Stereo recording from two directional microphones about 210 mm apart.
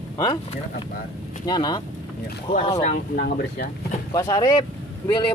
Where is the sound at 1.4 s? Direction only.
20° left (ahead or behind).